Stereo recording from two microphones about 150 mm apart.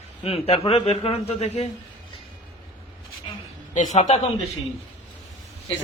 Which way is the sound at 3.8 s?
55° left (ahead or behind).